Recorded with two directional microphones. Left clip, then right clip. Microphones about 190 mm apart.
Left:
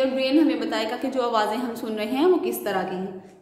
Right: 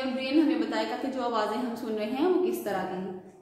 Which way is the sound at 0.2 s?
40° left (ahead or behind).